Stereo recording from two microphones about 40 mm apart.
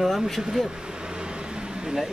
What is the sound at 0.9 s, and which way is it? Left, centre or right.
Vehicle, centre.